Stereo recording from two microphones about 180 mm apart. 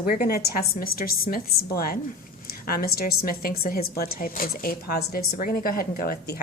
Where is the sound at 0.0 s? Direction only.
55° left (ahead or behind).